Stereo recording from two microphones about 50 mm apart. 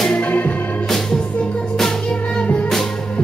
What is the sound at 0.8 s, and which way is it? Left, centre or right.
Music, centre.